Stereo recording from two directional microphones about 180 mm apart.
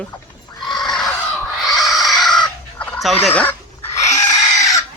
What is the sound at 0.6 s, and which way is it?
Neigh, centre (ahead or behind).